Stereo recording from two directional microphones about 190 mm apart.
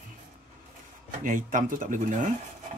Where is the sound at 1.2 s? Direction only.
45° right (ahead or behind).